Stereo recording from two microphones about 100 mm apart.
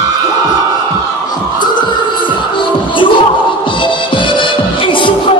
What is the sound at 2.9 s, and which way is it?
Music, 60° left (ahead or behind).